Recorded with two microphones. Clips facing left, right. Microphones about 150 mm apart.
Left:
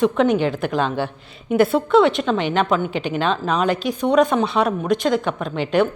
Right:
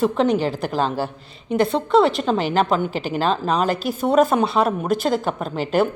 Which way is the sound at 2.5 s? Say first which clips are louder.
Even; 35° right (ahead or behind).